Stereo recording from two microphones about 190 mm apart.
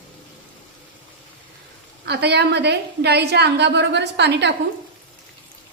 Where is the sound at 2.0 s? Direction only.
60° right (ahead or behind).